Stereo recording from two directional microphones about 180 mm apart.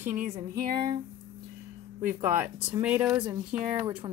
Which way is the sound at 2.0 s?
10° right (ahead or behind).